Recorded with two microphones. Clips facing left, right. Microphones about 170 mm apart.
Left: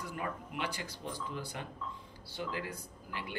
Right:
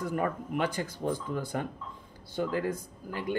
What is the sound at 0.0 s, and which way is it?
Speech, 50° right (ahead or behind).